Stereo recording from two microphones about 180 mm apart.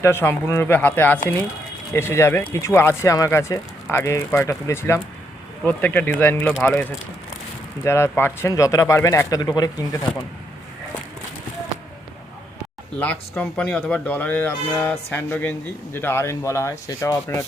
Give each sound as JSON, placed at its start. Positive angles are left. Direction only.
{"t": 0.0, "sound": "speech", "side_deg": 15}
{"t": 7.9, "sound": "speech", "side_deg": 15}
{"t": 13.0, "sound": "speech", "side_deg": 10}